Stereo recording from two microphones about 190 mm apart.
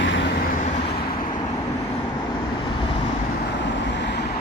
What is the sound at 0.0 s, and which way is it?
Vehicle, 70° left (ahead or behind).